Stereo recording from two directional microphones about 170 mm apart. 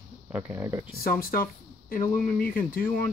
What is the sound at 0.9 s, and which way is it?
Speech, 60° left (ahead or behind).